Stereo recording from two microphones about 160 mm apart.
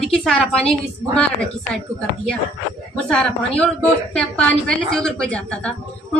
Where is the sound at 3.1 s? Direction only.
5° left (ahead or behind).